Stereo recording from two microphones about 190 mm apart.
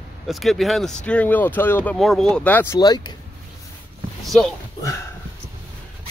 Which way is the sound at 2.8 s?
20° left (ahead or behind).